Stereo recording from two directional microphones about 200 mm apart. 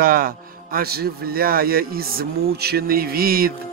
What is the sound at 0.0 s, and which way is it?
Music, 45° right (ahead or behind).